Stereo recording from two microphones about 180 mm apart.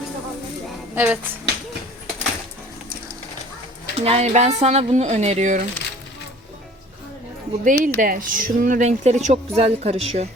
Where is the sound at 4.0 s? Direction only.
35° right (ahead or behind).